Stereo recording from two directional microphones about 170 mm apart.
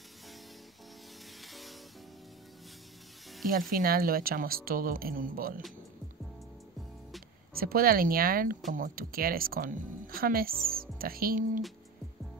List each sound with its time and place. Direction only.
1.4 s music: centre (ahead or behind)
3.7 s speech: 60° right (ahead or behind)
7.5 s speech: 60° right (ahead or behind)